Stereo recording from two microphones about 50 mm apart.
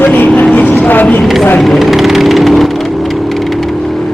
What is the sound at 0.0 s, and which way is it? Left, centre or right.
Vehicle, left.